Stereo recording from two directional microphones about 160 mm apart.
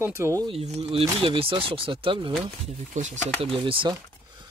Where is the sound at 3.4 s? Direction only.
35° right (ahead or behind).